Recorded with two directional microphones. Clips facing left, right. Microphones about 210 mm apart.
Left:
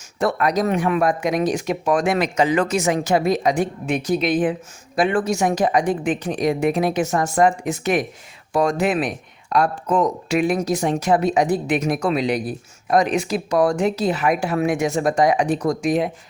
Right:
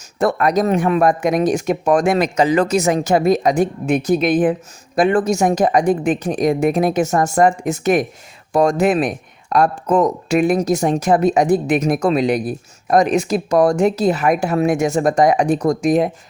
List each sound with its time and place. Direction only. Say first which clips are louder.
0.2 s speech: right 3 dB; 50° right (ahead or behind)